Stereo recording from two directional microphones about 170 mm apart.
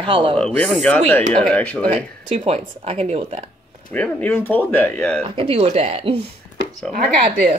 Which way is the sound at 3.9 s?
10° left (ahead or behind).